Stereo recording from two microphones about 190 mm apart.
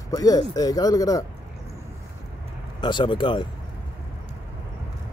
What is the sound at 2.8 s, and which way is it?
Speech, 25° left (ahead or behind).